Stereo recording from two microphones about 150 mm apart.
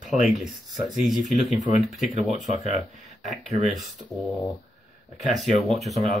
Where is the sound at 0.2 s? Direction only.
5° right (ahead or behind).